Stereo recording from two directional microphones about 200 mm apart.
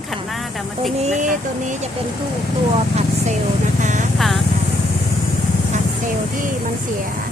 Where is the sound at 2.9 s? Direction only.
35° right (ahead or behind).